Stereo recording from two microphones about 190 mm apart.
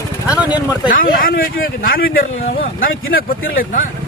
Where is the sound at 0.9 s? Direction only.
45° left (ahead or behind).